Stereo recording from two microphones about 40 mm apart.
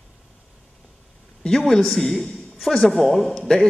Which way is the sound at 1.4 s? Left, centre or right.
Centre.